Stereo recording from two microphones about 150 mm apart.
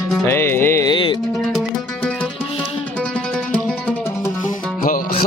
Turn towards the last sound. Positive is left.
turn(degrees=70)  # may be behind; listen again after turning